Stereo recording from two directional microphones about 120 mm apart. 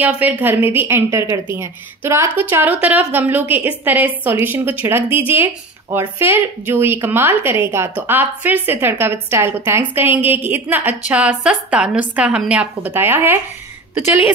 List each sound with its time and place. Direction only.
0.0 s a woman's voice: 15° right (ahead or behind)